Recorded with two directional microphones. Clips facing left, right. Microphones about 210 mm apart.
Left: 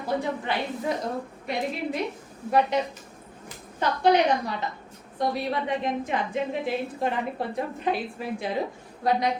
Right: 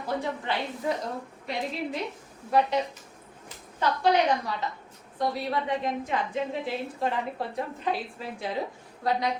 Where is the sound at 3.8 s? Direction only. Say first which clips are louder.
Left 2 dB; 20° left (ahead or behind).